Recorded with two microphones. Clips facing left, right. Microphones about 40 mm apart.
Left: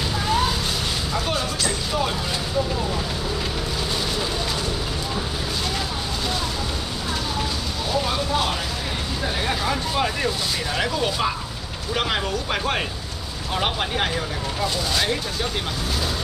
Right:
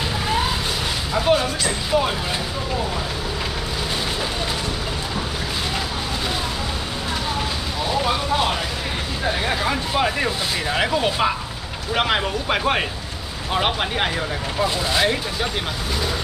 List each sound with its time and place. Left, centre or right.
1.1 s speech: centre
8.0 s speech: centre